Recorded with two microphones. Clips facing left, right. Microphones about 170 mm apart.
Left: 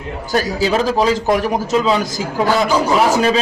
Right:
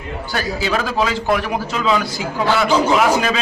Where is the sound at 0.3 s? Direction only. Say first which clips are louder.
Left 5 dB; 40° left (ahead or behind).